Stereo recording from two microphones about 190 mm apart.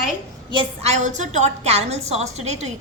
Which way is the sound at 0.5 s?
35° right (ahead or behind).